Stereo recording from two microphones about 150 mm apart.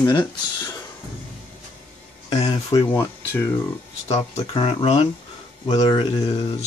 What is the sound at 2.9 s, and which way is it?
Speech, 15° left (ahead or behind).